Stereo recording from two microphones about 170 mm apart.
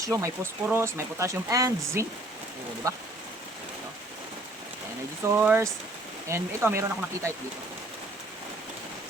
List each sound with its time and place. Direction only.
0.0 s speech: 20° right (ahead or behind)
5.4 s speech: 10° right (ahead or behind)